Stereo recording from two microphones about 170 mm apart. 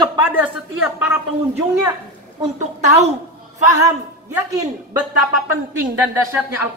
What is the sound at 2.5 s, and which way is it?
Speech, 45° right (ahead or behind).